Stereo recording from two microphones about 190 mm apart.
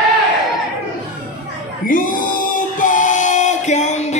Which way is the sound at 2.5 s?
40° left (ahead or behind).